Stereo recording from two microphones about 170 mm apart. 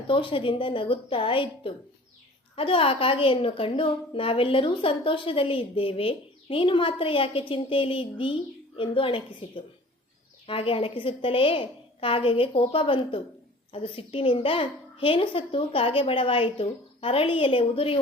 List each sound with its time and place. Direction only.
0.1 s a woman's voice: 30° left (ahead or behind)